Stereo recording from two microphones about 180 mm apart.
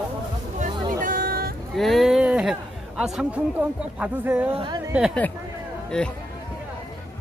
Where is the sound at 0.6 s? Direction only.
45° right (ahead or behind).